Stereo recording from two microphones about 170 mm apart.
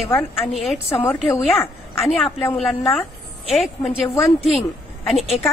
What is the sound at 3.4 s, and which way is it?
Speech, centre (ahead or behind).